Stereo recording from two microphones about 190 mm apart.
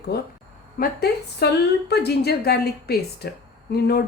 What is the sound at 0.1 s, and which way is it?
A woman's voice, 55° left (ahead or behind).